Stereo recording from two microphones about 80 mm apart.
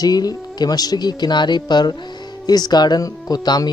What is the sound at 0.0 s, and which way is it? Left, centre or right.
Speech, left.